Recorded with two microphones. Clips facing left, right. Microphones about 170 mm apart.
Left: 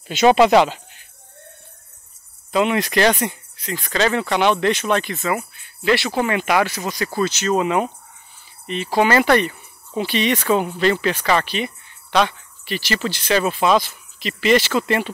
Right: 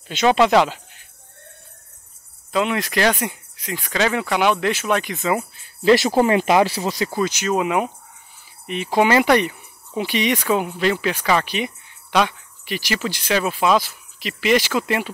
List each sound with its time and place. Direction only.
0.1 s speech: 10° left (ahead or behind)
2.5 s speech: centre (ahead or behind); by 5.5 s 20° right (ahead or behind)
5.6 s speech: 40° right (ahead or behind); by 15.0 s 10° right (ahead or behind)